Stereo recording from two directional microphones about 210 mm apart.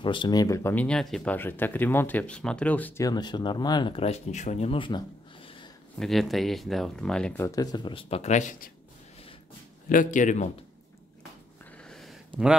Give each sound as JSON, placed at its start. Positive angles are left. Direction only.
{"t": 0.0, "sound": "speech", "side_deg": 25}
{"t": 3.1, "sound": "speech", "side_deg": 20}
{"t": 5.9, "sound": "speech", "side_deg": 0}
{"t": 9.8, "sound": "a man's voice", "side_deg": 40}
{"t": 11.9, "sound": "a sound", "side_deg": 0}